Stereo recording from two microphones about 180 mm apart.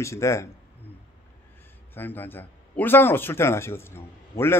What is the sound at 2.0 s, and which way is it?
Speech, 10° left (ahead or behind).